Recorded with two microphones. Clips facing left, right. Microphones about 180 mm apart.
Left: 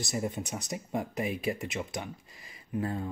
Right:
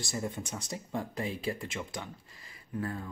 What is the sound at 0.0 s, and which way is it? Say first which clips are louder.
Speech: left 3 dB; 20° left (ahead or behind).